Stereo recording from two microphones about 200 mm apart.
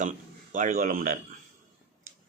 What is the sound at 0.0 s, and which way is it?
A man's voice, 40° right (ahead or behind).